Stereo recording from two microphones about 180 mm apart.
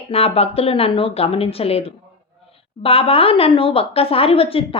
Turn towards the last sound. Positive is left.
turn(degrees=30)  # may be behind; listen again after turning